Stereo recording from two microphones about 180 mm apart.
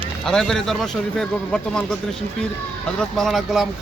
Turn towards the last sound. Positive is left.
turn(degrees=0)  # may be behind; listen again after turning